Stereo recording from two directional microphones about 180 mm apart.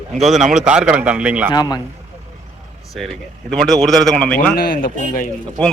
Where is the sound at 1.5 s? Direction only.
25° left (ahead or behind).